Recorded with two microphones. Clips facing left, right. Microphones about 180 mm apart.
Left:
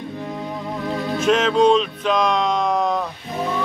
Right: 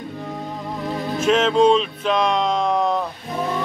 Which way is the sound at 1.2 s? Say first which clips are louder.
Even; centre (ahead or behind).